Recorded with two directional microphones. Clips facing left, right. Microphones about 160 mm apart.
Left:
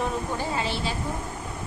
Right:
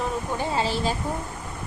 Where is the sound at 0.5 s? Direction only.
40° right (ahead or behind).